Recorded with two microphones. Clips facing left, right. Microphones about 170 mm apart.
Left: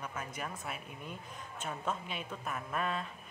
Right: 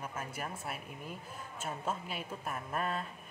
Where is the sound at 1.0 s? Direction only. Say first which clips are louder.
Right 1 dB; 5° right (ahead or behind).